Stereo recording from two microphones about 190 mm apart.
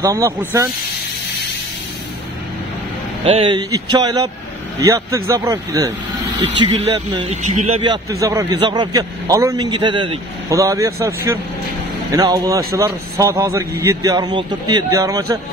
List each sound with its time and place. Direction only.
0.0 s a man's voice: 15° right (ahead or behind)
3.3 s a man's voice: 30° right (ahead or behind)
7.2 s a man's voice: 40° right (ahead or behind)
7.8 s a man's voice: 20° right (ahead or behind)
12.2 s a man's voice: 20° right (ahead or behind)